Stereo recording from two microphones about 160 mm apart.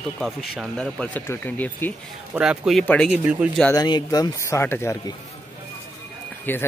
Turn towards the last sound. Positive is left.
turn(degrees=10)  # may be behind; listen again after turning